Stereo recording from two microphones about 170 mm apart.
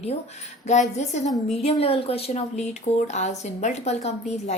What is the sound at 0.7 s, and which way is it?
A woman's voice, 45° left (ahead or behind).